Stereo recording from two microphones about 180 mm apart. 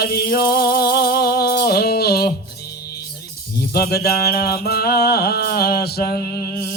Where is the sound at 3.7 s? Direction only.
60° left (ahead or behind).